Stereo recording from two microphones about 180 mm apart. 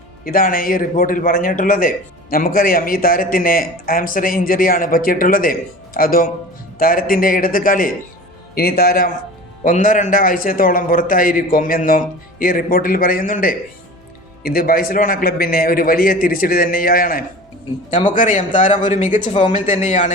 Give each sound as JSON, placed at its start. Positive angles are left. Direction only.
{"t": 0.3, "sound": "a man's voice", "side_deg": 50}